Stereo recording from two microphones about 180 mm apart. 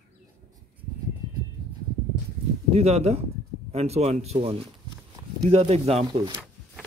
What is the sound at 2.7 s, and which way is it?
A man's voice, 35° right (ahead or behind).